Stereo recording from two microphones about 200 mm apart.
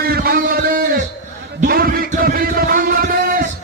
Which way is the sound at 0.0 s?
50° right (ahead or behind).